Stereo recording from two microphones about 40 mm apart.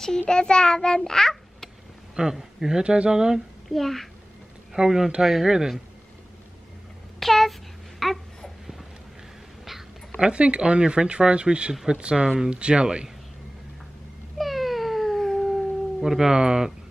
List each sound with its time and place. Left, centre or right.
0.3 s a child's voice: left
2.1 s a man's voice: centre
3.6 s a child's voice: centre
4.7 s speech: centre
7.2 s a sound: centre
9.7 s a sound: centre
10.2 s speech: right
14.4 s cat: centre
16.3 s speech: centre